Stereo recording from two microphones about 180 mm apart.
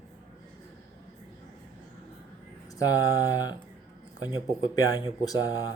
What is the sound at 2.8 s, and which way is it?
Speech, 20° left (ahead or behind).